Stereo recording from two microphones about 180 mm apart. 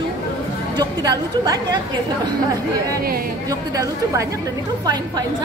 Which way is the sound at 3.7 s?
20° right (ahead or behind).